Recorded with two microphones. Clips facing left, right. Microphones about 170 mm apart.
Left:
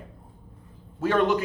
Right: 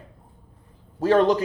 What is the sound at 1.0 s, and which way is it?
Speech, 35° right (ahead or behind).